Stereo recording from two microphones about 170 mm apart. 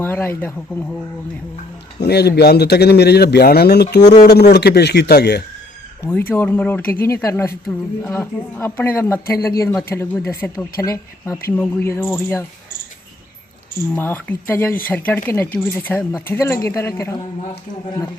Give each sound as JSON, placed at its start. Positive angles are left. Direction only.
{"t": 0.0, "sound": "speech", "side_deg": 15}
{"t": 2.0, "sound": "speech", "side_deg": 75}
{"t": 6.0, "sound": "speech", "side_deg": 10}
{"t": 13.9, "sound": "speech", "side_deg": 10}